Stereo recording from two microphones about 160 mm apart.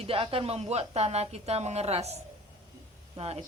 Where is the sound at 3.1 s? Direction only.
40° right (ahead or behind).